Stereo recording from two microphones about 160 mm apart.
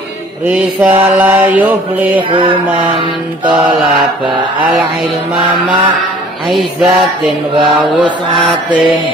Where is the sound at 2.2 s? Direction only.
30° right (ahead or behind).